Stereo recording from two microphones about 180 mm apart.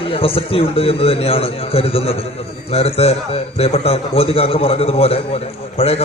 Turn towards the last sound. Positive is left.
turn(degrees=35)  # may be behind; listen again after turning